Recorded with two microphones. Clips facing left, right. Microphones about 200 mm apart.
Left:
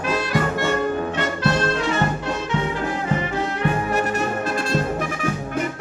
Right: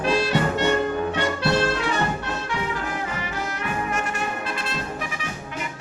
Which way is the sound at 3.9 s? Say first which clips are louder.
Left 6 dB; 45° left (ahead or behind).